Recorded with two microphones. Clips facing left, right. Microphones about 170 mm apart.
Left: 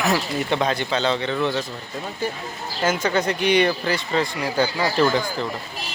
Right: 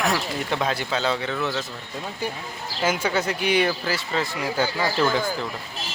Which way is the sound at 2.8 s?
10° right (ahead or behind).